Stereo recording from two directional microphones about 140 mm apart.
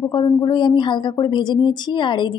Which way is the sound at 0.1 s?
30° left (ahead or behind).